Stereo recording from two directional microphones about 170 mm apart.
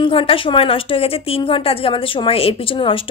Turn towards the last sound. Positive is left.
turn(degrees=30)  # may be behind; listen again after turning